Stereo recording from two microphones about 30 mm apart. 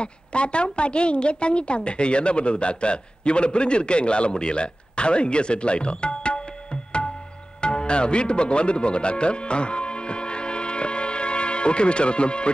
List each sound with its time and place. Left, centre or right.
0.0 s a woman's voice: left
7.6 s music: left